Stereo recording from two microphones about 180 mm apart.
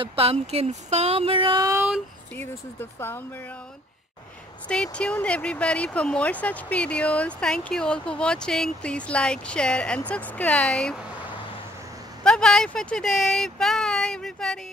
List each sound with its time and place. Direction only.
0.0 s speech: 30° right (ahead or behind)
2.3 s speech: 10° left (ahead or behind)
4.6 s speech: 5° left (ahead or behind)
12.2 s speech: 5° left (ahead or behind)